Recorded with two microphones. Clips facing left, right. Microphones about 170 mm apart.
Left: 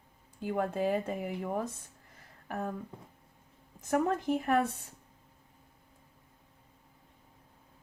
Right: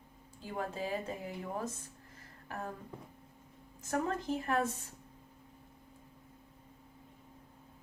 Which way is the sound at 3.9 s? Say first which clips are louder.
Left 5 dB; 60° left (ahead or behind).